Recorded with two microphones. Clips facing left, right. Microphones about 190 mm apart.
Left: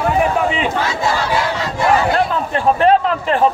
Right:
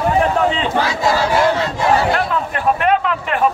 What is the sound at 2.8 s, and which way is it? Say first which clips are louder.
Speech: left 4 dB; 35° left (ahead or behind).